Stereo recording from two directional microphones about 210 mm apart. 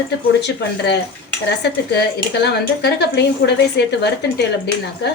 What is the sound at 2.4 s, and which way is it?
A woman's voice, 50° left (ahead or behind).